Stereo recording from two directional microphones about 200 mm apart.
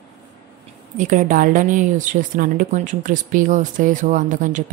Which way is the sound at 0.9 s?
40° right (ahead or behind).